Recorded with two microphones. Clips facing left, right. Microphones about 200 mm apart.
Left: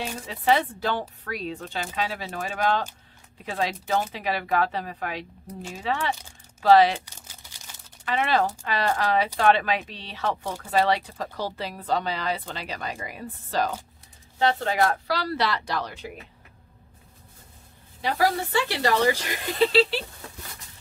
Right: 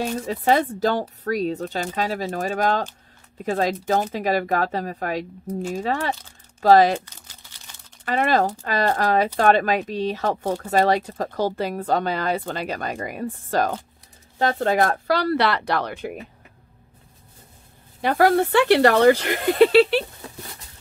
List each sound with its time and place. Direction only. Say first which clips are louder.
0.0 s speech: right 5 dB; 45° right (ahead or behind)
8.0 s speech: right 4 dB; 45° right (ahead or behind)
18.0 s speech: right 7 dB; 55° right (ahead or behind)